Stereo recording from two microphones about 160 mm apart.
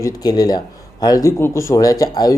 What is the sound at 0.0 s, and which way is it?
A man's voice, 25° left (ahead or behind).